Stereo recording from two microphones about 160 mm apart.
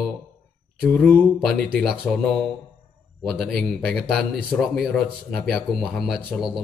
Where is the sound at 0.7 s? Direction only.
Centre (ahead or behind).